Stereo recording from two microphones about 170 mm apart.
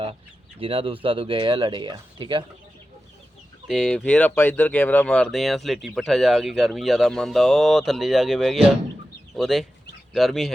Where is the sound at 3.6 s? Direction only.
Centre (ahead or behind).